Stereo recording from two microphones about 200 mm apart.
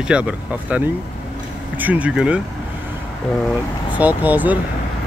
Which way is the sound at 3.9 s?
10° right (ahead or behind).